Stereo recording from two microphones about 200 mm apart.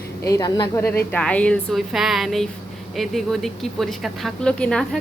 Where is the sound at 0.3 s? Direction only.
20° left (ahead or behind).